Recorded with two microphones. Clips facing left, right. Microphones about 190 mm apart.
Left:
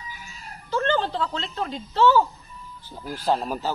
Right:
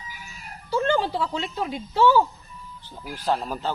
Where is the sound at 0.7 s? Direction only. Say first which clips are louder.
Right 1 dB; 10° right (ahead or behind).